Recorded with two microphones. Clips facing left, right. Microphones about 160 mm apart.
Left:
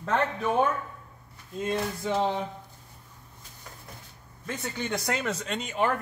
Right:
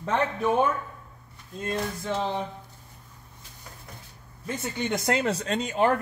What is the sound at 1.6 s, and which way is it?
Speech, 5° left (ahead or behind).